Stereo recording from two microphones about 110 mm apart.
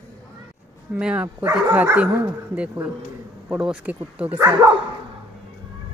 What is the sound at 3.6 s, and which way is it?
Speech, 10° right (ahead or behind).